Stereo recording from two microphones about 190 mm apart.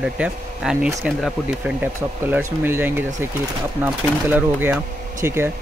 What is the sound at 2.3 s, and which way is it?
Speech, 10° right (ahead or behind).